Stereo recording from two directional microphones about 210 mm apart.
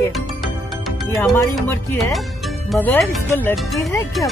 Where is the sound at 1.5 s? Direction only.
10° left (ahead or behind).